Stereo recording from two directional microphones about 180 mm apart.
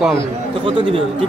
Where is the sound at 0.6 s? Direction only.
30° right (ahead or behind).